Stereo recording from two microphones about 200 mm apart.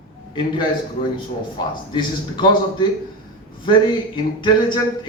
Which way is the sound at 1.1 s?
25° left (ahead or behind).